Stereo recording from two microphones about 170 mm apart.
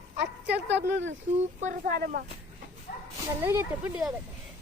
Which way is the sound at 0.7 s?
90° right.